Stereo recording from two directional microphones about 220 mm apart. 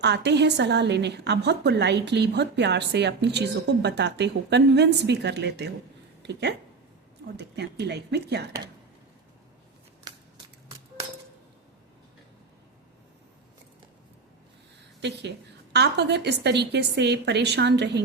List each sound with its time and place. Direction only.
0.0 s a woman's voice: 50° right (ahead or behind)
7.3 s a woman's voice: 50° right (ahead or behind)
10.1 s a sound: 20° right (ahead or behind)
15.0 s a woman's voice: 50° right (ahead or behind)